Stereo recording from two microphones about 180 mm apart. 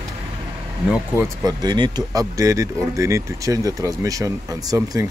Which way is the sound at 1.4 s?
20° right (ahead or behind).